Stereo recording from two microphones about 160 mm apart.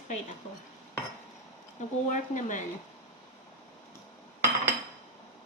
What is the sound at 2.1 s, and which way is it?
Speech, 50° left (ahead or behind).